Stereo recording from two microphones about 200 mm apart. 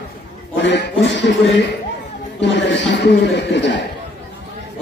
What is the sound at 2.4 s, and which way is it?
A man's voice, 65° left (ahead or behind).